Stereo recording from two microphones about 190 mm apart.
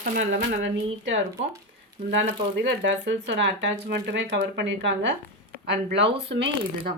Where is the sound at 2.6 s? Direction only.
70° right (ahead or behind).